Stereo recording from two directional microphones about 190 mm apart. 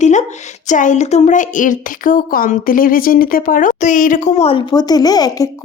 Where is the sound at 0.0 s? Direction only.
40° left (ahead or behind).